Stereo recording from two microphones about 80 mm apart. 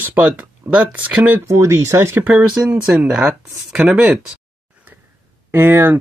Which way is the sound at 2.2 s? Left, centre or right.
Centre.